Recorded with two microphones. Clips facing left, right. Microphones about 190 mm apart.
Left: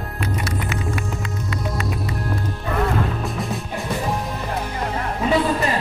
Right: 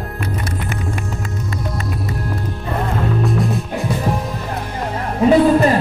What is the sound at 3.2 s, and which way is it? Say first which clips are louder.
Music: right 7 dB; centre (ahead or behind).